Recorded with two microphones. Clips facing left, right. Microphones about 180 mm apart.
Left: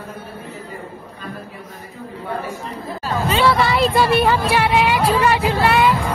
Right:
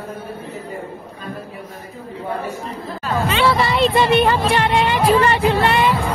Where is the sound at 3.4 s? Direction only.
Centre (ahead or behind).